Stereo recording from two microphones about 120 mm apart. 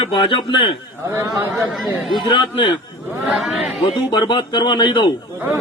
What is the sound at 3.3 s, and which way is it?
Speech, centre (ahead or behind).